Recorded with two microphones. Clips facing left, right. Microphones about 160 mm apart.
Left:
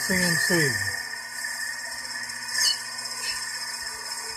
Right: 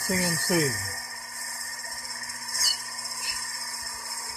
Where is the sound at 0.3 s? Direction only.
15° right (ahead or behind).